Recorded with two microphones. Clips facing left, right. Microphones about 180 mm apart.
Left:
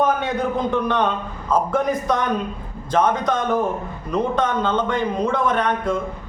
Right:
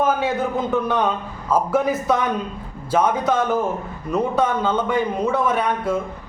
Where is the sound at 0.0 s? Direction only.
5° right (ahead or behind).